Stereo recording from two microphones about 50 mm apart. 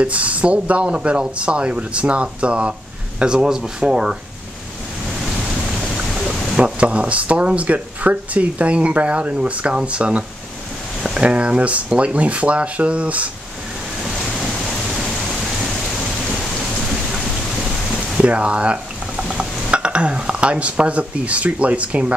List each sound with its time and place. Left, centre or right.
0.0 s speech: right
5.9 s a sound: centre
6.6 s speech: right
18.1 s stir: right